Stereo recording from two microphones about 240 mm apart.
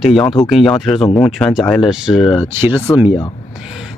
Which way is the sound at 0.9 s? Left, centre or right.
Centre.